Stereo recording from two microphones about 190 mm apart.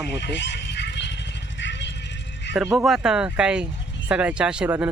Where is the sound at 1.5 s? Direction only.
70° left (ahead or behind).